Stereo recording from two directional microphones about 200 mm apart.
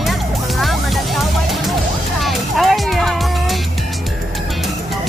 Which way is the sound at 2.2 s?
Centre (ahead or behind).